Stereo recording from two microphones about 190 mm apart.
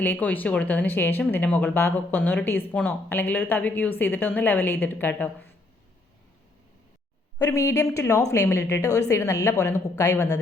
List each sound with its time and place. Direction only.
0.0 s speech: 10° left (ahead or behind)
7.3 s speech: 15° left (ahead or behind)